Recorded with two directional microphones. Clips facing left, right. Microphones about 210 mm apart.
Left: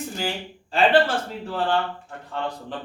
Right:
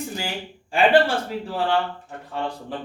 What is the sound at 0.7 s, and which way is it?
Speech, 10° right (ahead or behind).